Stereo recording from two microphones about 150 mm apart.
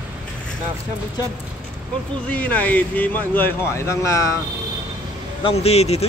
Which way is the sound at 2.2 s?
10° left (ahead or behind).